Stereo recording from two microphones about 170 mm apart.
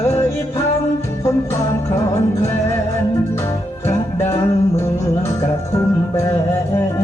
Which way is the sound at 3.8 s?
15° left (ahead or behind).